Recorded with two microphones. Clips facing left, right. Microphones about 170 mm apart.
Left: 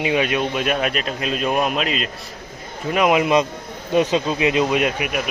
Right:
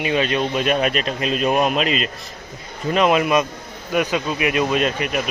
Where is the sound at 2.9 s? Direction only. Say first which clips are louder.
Even; 15° left (ahead or behind).